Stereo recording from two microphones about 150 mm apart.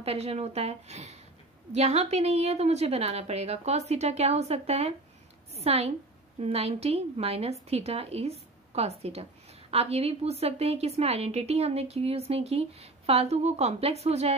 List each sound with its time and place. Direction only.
0.0 s a woman's voice: 40° right (ahead or behind)